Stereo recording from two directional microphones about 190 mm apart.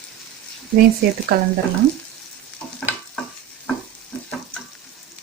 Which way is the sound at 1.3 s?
60° right (ahead or behind).